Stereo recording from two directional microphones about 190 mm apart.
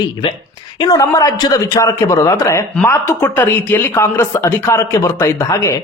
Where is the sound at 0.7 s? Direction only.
20° left (ahead or behind).